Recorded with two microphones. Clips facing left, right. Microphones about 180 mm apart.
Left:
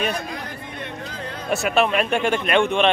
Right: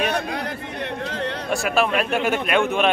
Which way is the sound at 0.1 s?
75° right (ahead or behind).